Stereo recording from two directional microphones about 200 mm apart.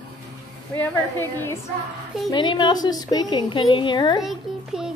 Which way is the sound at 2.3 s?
25° left (ahead or behind).